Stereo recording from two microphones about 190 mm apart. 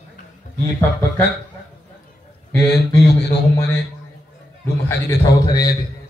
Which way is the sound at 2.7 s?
60° left (ahead or behind).